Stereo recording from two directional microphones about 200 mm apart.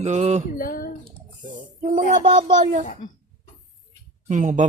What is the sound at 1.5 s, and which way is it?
Speech, 40° right (ahead or behind).